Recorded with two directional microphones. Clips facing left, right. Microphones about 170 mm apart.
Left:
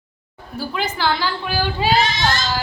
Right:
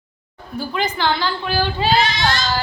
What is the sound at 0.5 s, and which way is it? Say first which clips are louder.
A woman's voice: right 2 dB; 5° left (ahead or behind).